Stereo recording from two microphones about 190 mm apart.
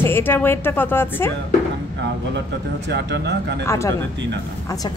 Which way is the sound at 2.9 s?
65° right (ahead or behind).